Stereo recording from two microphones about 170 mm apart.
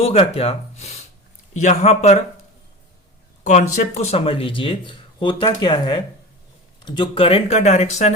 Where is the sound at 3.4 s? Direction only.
45° left (ahead or behind).